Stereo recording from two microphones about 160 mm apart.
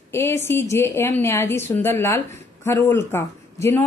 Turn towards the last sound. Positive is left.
turn(degrees=15)  # may be behind; listen again after turning